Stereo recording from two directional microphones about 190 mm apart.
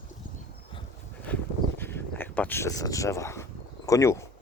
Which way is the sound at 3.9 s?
15° left (ahead or behind).